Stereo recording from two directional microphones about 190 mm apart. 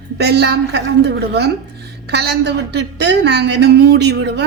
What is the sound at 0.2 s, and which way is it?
A woman's voice, 60° right (ahead or behind).